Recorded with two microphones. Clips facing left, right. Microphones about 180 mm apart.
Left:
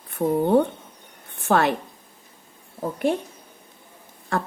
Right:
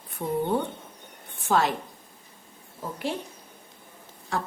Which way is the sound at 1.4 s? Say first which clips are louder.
Left 4 dB; 60° left (ahead or behind).